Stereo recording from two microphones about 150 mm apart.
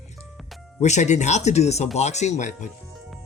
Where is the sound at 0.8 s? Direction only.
50° left (ahead or behind).